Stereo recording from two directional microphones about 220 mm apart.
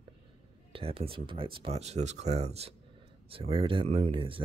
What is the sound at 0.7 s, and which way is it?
Speech, 25° right (ahead or behind).